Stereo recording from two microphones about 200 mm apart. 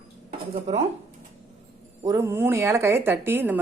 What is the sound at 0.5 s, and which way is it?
Speech, 30° right (ahead or behind).